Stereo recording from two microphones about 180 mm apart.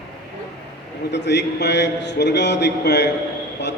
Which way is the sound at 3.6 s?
75° left (ahead or behind).